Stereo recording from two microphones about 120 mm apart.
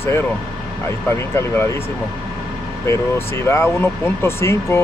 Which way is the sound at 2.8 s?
20° left (ahead or behind).